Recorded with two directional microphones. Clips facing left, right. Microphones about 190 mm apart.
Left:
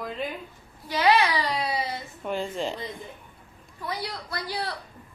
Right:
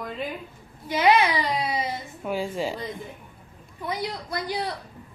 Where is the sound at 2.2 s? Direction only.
5° right (ahead or behind).